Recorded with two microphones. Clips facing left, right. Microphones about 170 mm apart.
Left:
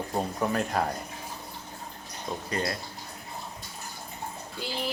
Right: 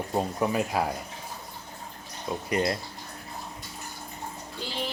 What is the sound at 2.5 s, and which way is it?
Speech, 20° right (ahead or behind).